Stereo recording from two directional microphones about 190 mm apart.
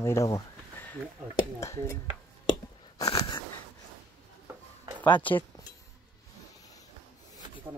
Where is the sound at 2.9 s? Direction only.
20° left (ahead or behind).